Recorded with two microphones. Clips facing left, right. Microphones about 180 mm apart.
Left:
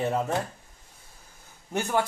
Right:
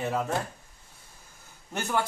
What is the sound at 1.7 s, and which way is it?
Speech, 15° left (ahead or behind).